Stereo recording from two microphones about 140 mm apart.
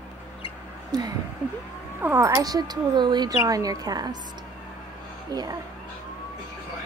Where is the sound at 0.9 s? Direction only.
30° right (ahead or behind).